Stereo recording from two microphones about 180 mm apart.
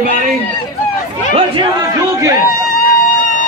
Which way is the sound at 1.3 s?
25° right (ahead or behind).